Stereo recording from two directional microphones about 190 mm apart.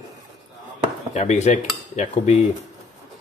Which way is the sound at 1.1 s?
35° left (ahead or behind).